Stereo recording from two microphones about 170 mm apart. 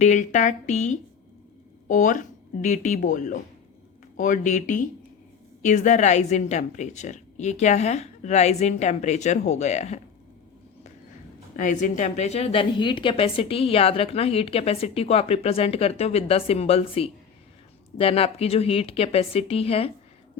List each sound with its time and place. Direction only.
0.0 s speech: 45° left (ahead or behind)
11.5 s a woman's voice: 45° left (ahead or behind)